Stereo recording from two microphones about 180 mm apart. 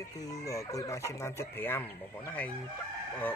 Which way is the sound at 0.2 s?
20° left (ahead or behind).